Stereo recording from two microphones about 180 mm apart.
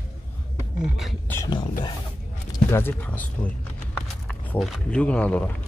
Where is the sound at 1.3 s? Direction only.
20° left (ahead or behind).